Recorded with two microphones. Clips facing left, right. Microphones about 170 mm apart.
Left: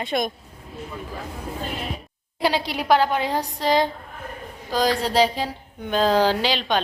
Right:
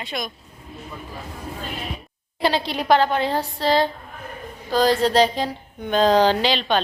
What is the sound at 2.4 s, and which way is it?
A woman's voice, 10° left (ahead or behind).